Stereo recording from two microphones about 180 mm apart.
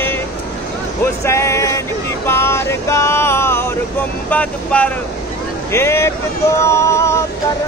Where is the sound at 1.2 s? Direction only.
15° left (ahead or behind).